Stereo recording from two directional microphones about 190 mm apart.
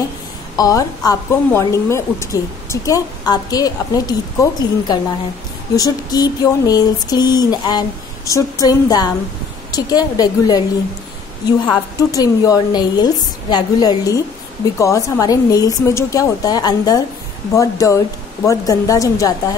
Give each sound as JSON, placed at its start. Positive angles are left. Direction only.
{"t": 0.6, "sound": "a woman's voice", "side_deg": 20}
{"t": 12.0, "sound": "a woman's voice", "side_deg": 20}